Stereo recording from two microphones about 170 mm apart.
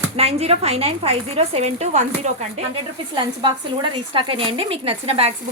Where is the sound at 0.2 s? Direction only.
35° right (ahead or behind).